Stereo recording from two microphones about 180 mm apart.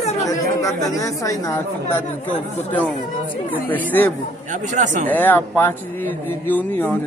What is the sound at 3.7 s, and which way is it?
Speech, 10° left (ahead or behind).